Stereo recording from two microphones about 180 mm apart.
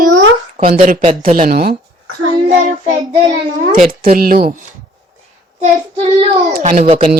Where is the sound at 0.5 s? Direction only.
45° right (ahead or behind).